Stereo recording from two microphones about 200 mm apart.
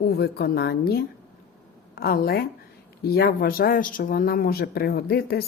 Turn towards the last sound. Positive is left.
turn(degrees=50)  # may be behind; listen again after turning